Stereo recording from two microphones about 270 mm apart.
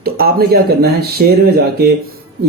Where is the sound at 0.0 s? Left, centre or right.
Right.